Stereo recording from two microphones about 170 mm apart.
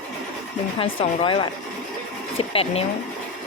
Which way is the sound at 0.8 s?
30° left (ahead or behind).